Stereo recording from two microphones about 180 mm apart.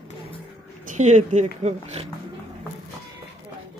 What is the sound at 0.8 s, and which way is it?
Speech, 40° right (ahead or behind).